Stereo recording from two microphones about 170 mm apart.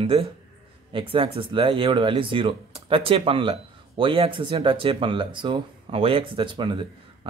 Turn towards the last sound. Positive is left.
turn(degrees=-30)  # may be behind; listen again after turning